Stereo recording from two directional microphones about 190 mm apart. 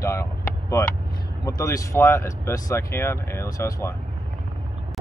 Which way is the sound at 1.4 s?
15° left (ahead or behind).